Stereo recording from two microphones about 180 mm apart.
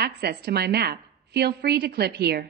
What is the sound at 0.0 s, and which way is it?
A woman's voice, 65° right (ahead or behind).